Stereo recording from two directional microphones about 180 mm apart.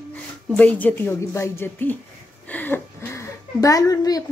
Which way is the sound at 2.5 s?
10° left (ahead or behind).